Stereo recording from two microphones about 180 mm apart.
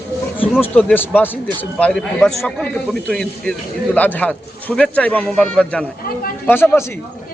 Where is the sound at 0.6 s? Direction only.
10° left (ahead or behind).